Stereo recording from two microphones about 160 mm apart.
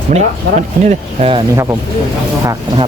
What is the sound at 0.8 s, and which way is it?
Speech, 40° right (ahead or behind).